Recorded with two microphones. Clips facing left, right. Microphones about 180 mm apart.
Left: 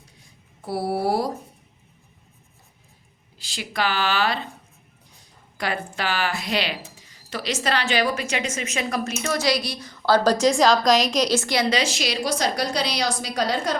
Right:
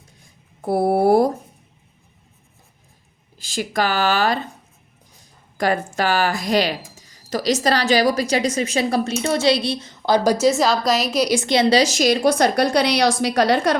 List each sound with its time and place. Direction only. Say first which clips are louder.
0.6 s speech: right 7 dB; 50° right (ahead or behind)
3.3 s speech: right 6 dB; 45° right (ahead or behind)
5.5 s speech: right 7 dB; 45° right (ahead or behind); by 11.6 s 20° right (ahead or behind)
11.7 s a woman's voice: right 8 dB; 40° right (ahead or behind); by 13.7 s 70° right (ahead or behind)